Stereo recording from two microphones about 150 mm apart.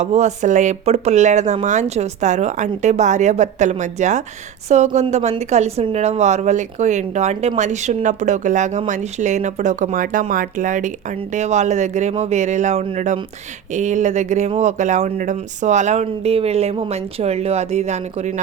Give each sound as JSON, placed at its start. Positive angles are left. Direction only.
{"t": 0.0, "sound": "speech", "side_deg": -50}